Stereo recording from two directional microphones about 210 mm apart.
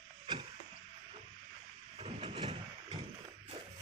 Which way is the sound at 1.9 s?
30° right (ahead or behind).